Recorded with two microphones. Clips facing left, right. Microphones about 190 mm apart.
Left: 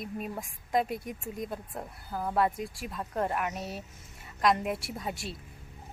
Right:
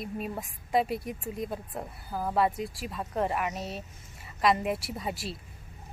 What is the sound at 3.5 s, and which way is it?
Speech, 30° right (ahead or behind).